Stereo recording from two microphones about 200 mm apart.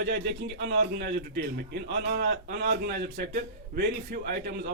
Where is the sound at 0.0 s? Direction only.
60° right (ahead or behind).